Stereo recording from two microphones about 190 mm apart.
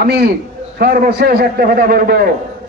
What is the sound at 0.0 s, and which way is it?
A man's voice, 55° right (ahead or behind).